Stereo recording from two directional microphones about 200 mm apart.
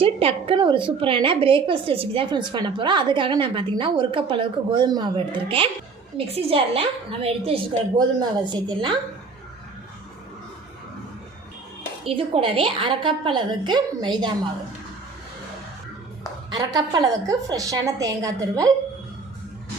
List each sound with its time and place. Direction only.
0.0 s a woman's voice: 30° right (ahead or behind)
12.0 s a woman's voice: 30° right (ahead or behind)
16.5 s a woman's voice: 20° right (ahead or behind)